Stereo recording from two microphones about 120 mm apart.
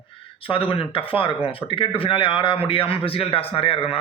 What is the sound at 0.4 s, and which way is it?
A man's voice, 50° left (ahead or behind).